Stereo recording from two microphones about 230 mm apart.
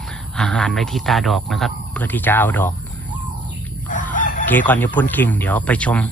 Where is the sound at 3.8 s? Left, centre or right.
Left.